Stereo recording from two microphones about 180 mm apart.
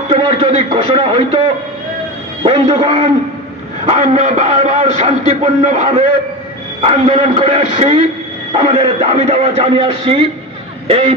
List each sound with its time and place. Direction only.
0.1 s a man's voice: 30° right (ahead or behind)